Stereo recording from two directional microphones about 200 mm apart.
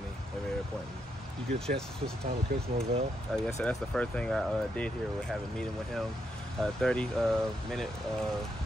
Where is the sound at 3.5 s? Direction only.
5° left (ahead or behind).